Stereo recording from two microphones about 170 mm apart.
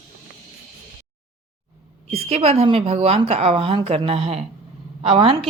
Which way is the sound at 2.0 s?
35° right (ahead or behind).